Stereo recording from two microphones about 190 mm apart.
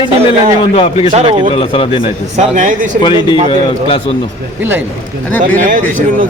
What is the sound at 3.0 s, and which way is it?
A man's voice, 25° left (ahead or behind).